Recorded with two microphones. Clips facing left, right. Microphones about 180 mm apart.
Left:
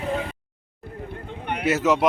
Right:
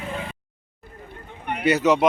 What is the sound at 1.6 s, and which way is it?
Speech, centre (ahead or behind).